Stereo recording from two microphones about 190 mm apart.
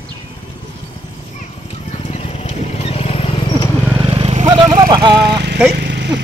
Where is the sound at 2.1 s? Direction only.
30° left (ahead or behind).